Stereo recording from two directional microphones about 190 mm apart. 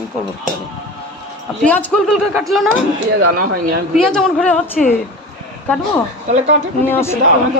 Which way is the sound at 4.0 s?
5° left (ahead or behind).